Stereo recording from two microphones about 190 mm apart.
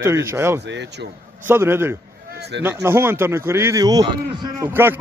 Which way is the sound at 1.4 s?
10° right (ahead or behind).